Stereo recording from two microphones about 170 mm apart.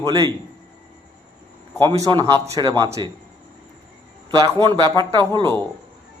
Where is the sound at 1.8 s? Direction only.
20° right (ahead or behind).